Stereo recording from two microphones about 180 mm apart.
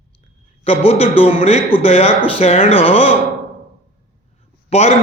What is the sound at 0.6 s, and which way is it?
Speech, 35° left (ahead or behind).